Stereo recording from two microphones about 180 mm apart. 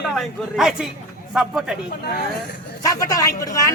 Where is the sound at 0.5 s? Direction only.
Centre (ahead or behind).